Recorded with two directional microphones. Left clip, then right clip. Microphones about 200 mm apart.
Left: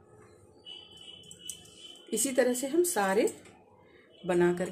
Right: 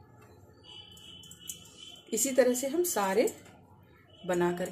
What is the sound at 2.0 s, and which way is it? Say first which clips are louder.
A woman's voice: right 2 dB; 15° left (ahead or behind).